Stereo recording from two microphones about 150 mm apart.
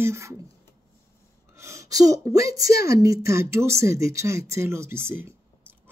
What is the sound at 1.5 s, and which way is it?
A woman's voice, 20° right (ahead or behind).